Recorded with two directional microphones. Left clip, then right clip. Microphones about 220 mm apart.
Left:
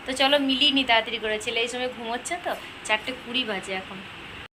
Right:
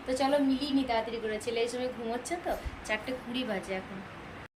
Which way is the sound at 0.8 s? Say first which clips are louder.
Left 9 dB; centre (ahead or behind).